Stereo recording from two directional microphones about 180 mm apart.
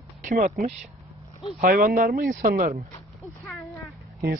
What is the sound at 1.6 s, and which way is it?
Speech, 50° right (ahead or behind).